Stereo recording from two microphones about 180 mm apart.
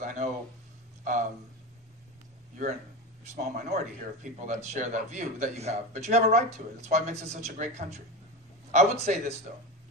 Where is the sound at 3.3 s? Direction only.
45° right (ahead or behind).